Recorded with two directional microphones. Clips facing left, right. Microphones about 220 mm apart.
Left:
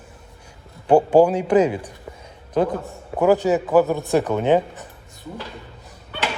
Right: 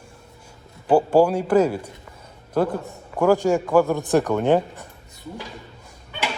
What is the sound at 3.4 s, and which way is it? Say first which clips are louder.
A man's voice: left 1 dB; 5° left (ahead or behind).